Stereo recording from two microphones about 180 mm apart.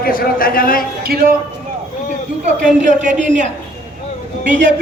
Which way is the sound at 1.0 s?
55° right (ahead or behind).